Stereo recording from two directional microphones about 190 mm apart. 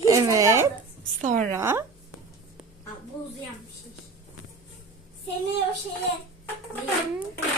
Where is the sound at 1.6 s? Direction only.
15° right (ahead or behind).